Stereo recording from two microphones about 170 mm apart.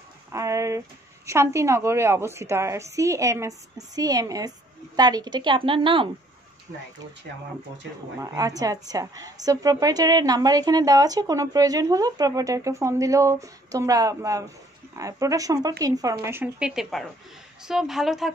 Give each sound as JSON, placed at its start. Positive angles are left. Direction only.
{"t": 0.3, "sound": "a woman's voice", "side_deg": -20}
{"t": 8.2, "sound": "a woman's voice", "side_deg": -20}